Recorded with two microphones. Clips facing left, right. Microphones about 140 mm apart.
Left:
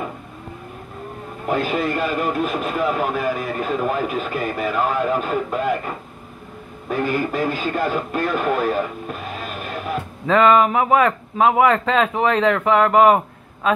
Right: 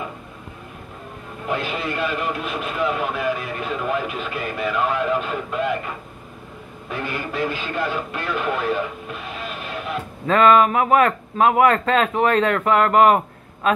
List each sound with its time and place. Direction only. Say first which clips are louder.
1.5 s speech: left 5 dB; 45° left (ahead or behind)
6.9 s speech: left 7 dB; 45° left (ahead or behind)
10.2 s a sound: even; 5° left (ahead or behind)
10.9 s speech: even; centre (ahead or behind)